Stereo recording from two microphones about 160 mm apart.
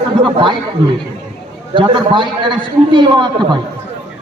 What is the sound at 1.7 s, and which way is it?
A man's voice, 30° right (ahead or behind).